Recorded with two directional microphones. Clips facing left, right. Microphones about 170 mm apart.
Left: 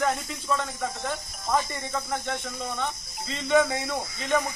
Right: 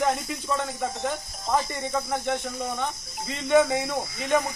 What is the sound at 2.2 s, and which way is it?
Speech, 15° right (ahead or behind).